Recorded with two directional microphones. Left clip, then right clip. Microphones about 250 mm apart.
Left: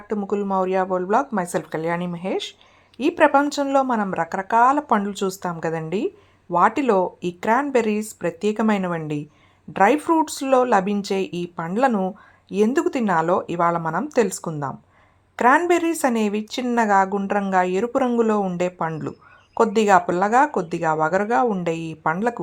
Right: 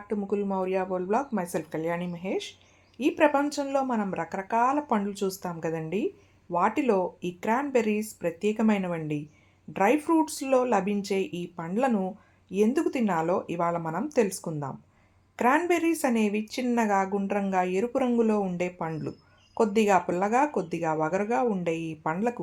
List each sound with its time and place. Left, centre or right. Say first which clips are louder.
0.1 s speech: left 6 dB; centre